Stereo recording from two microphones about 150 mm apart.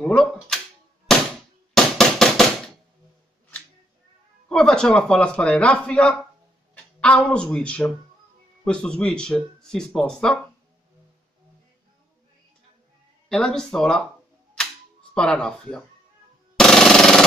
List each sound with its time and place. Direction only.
0.0 s speech: 5° left (ahead or behind)
1.7 s knock: 5° left (ahead or behind)
4.5 s speech: 5° left (ahead or behind)
13.3 s speech: 5° left (ahead or behind)
14.6 s cap gun: 5° left (ahead or behind)
16.5 s a sound: 5° left (ahead or behind)